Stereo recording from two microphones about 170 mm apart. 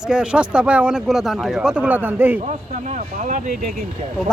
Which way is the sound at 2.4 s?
45° right (ahead or behind).